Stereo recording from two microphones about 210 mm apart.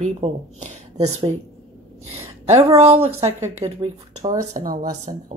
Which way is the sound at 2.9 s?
30° right (ahead or behind).